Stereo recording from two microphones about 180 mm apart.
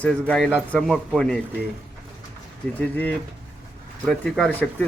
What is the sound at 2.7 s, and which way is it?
Speech, 10° left (ahead or behind).